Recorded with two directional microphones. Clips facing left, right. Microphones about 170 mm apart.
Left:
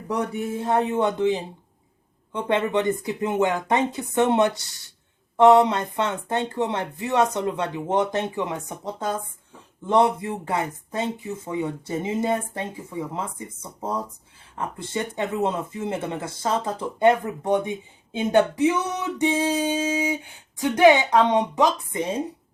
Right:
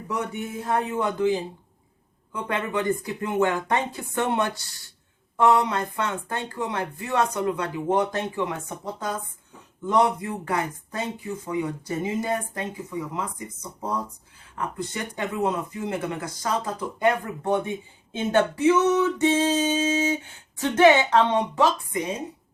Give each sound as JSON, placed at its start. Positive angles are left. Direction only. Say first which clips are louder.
{"t": 0.1, "sound": "speech", "louder": "left 4 dB", "side_deg": 35}